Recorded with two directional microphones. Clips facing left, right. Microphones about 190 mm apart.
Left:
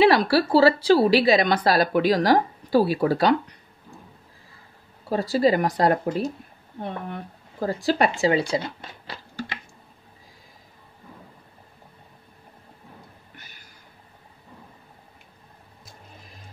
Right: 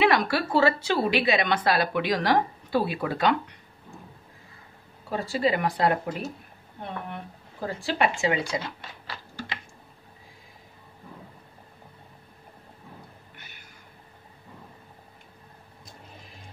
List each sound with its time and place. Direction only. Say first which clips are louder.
0.0 s a woman's voice: left 5 dB; 35° left (ahead or behind)
5.1 s a woman's voice: left 5 dB; 40° left (ahead or behind)
7.6 s a woman's voice: left 4 dB; 40° left (ahead or behind)